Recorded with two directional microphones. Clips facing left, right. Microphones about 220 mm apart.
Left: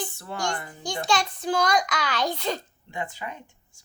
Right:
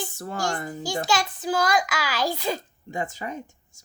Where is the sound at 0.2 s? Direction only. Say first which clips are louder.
Right 5 dB; 40° right (ahead or behind).